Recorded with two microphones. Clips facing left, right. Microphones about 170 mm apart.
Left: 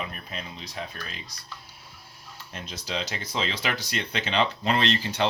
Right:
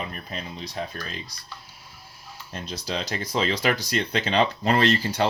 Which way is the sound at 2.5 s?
35° right (ahead or behind).